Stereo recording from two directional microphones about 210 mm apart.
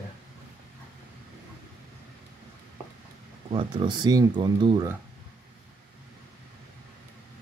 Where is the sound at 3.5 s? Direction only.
25° right (ahead or behind).